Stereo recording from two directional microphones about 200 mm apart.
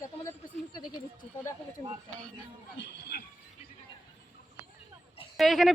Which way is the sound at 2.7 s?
55° left (ahead or behind).